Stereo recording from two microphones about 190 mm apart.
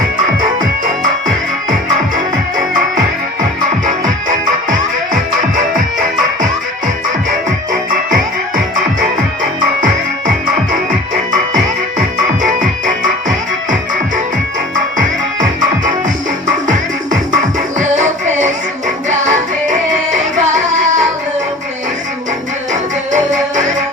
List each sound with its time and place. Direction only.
5.1 s music: 45° right (ahead or behind)
12.4 s music: 45° right (ahead or behind)
14.9 s music: 45° right (ahead or behind)
22.7 s music: 40° right (ahead or behind)